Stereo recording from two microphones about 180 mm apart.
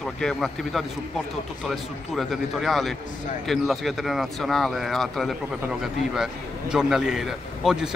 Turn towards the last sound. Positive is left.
turn(degrees=0)  # may be behind; listen again after turning